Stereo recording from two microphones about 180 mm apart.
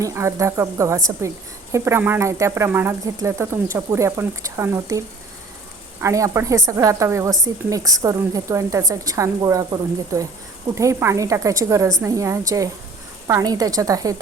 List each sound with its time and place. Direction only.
0.0 s a woman's voice: 15° right (ahead or behind)